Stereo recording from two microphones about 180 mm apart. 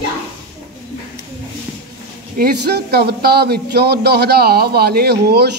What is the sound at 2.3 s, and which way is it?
A man's voice, 60° right (ahead or behind).